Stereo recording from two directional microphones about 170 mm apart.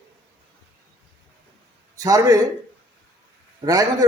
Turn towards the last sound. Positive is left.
turn(degrees=-20)  # may be behind; listen again after turning